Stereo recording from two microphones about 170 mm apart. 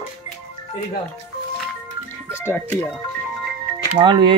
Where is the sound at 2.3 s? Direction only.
15° left (ahead or behind).